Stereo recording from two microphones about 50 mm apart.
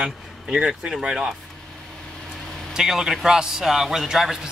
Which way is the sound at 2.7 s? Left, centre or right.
Centre.